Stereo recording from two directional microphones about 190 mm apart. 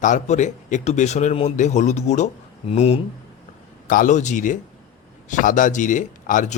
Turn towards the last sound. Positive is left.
turn(degrees=40)  # may be behind; listen again after turning